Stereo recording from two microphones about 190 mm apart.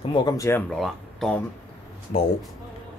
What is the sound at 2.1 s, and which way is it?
Speech, 40° left (ahead or behind).